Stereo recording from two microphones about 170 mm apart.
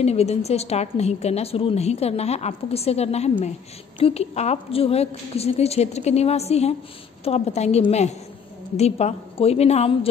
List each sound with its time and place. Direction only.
0.0 s a woman's voice: 40° left (ahead or behind)